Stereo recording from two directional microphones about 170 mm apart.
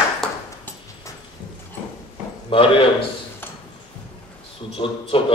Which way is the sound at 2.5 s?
30° left (ahead or behind).